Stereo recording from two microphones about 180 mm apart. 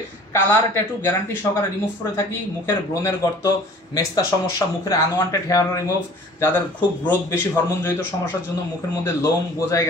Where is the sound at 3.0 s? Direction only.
15° left (ahead or behind).